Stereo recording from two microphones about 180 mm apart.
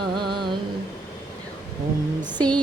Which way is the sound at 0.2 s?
25° right (ahead or behind).